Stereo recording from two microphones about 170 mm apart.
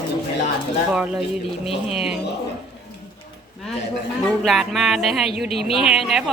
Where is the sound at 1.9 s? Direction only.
5° right (ahead or behind).